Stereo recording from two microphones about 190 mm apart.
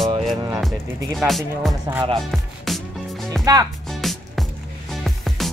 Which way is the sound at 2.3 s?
Centre (ahead or behind).